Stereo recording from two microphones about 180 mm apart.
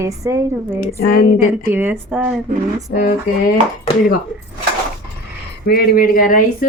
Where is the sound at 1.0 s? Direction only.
55° left (ahead or behind).